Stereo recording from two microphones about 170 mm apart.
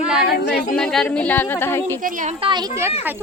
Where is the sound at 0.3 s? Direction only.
70° left (ahead or behind).